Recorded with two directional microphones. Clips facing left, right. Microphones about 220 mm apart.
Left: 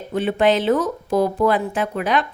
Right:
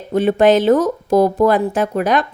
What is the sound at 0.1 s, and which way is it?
A woman's voice, 40° right (ahead or behind).